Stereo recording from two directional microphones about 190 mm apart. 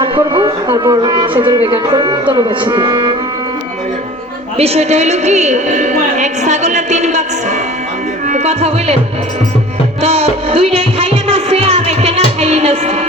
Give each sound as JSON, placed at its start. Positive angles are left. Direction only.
{"t": 0.0, "sound": "a man's voice", "side_deg": -25}
{"t": 4.5, "sound": "a woman's voice", "side_deg": -35}
{"t": 8.3, "sound": "a woman's voice", "side_deg": -35}
{"t": 10.0, "sound": "music", "side_deg": -35}